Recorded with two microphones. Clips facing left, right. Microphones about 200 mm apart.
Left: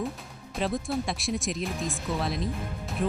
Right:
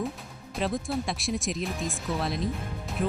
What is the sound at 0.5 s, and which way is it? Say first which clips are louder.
Speech: even; centre (ahead or behind).